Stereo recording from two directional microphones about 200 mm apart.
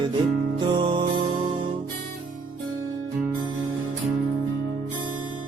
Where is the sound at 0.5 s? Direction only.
25° right (ahead or behind).